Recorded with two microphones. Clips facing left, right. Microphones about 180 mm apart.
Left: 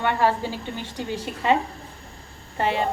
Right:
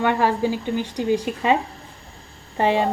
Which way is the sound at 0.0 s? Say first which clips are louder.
Right 3 dB; 15° right (ahead or behind).